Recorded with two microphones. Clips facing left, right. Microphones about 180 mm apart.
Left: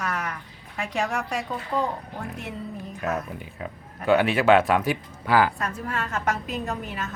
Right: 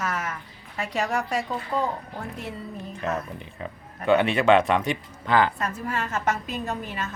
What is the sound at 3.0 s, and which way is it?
Speech, centre (ahead or behind).